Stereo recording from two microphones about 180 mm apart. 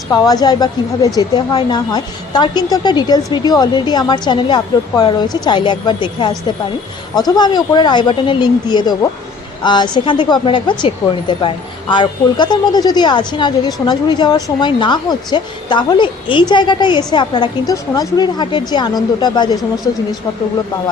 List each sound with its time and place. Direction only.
0.1 s a woman's voice: 20° left (ahead or behind)